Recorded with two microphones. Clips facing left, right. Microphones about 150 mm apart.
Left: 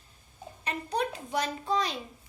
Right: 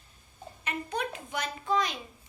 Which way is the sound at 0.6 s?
35° left (ahead or behind).